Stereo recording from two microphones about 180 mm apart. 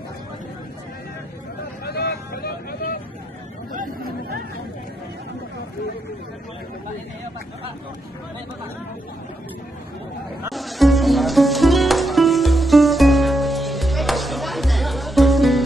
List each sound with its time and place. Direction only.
1.9 s vehicle: 60° left (ahead or behind)
3.7 s chatter: 55° right (ahead or behind)
10.5 s music: centre (ahead or behind)